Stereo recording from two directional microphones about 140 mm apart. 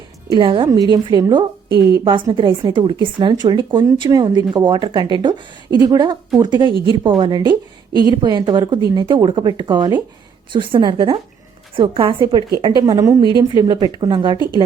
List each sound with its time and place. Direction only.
0.3 s a woman's voice: 35° right (ahead or behind)